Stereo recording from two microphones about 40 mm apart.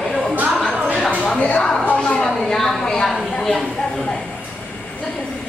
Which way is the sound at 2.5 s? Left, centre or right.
Centre.